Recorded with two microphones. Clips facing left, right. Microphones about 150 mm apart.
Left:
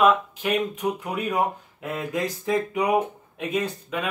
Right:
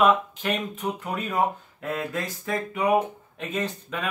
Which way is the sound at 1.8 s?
15° left (ahead or behind).